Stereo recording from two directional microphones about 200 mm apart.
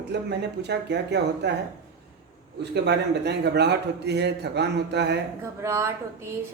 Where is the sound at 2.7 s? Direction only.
55° right (ahead or behind).